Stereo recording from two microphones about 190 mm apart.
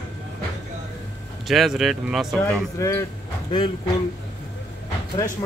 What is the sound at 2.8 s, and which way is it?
Speech, 15° left (ahead or behind).